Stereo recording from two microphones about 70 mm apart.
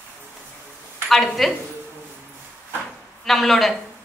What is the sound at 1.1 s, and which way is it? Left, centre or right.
Speech, centre.